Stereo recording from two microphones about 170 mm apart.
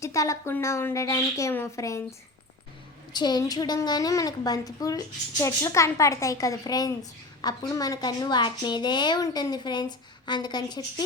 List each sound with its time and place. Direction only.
0.0 s a woman's voice: 20° left (ahead or behind)